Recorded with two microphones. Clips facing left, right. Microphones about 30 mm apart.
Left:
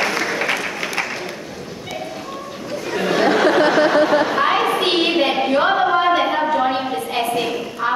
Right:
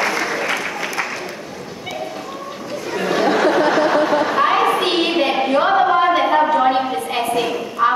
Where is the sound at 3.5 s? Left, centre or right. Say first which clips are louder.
Left 1 dB; left.